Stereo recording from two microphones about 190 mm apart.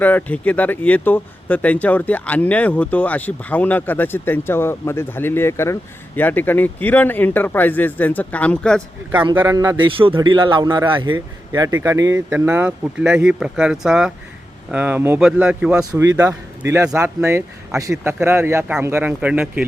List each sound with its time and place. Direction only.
0.0 s speech: 10° left (ahead or behind)
9.3 s a man's voice: 10° right (ahead or behind)
16.1 s a man's voice: 15° right (ahead or behind)